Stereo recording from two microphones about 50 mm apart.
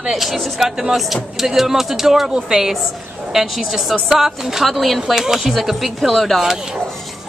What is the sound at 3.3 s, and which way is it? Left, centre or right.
Music, centre.